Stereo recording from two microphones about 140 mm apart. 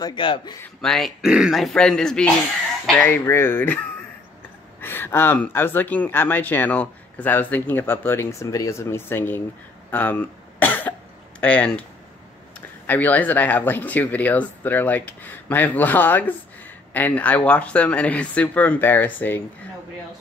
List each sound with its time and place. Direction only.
0.0 s a man's voice: 35° left (ahead or behind)
0.7 s speech: 5° left (ahead or behind)
9.8 s cough: 15° left (ahead or behind)
11.4 s speech: 10° left (ahead or behind)
12.8 s speech: 15° left (ahead or behind)